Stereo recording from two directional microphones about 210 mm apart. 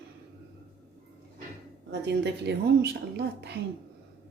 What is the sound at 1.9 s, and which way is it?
A woman's voice, 55° right (ahead or behind).